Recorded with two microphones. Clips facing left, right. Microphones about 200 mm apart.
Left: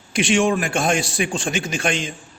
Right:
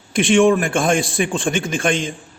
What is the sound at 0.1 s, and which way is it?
A man's voice, 55° right (ahead or behind).